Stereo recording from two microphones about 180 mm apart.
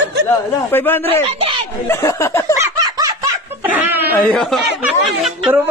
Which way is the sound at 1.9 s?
15° left (ahead or behind).